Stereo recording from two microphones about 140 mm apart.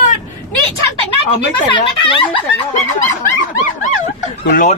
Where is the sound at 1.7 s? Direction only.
35° left (ahead or behind).